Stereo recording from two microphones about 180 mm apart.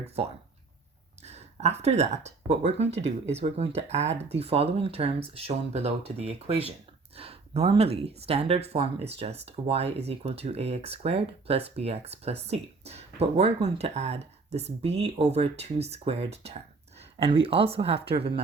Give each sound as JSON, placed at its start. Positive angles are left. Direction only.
{"t": 1.2, "sound": "speech", "side_deg": -35}